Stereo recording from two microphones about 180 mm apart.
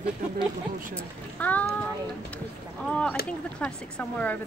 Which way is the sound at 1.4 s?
10° left (ahead or behind).